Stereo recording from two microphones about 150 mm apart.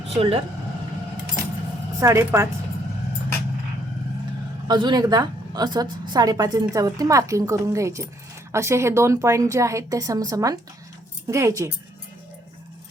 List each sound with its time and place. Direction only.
0.1 s speech: 40° right (ahead or behind)
2.0 s a woman's voice: 20° right (ahead or behind)
4.7 s a woman's voice: 30° right (ahead or behind)